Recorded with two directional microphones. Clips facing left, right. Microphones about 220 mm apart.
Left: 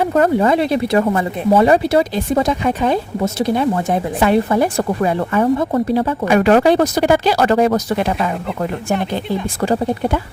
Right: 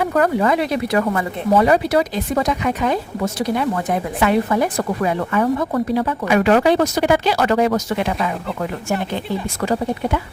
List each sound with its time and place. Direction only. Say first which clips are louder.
0.0 s speech: left 3 dB; 25° left (ahead or behind)
9.6 s speech: left 3 dB; 30° left (ahead or behind)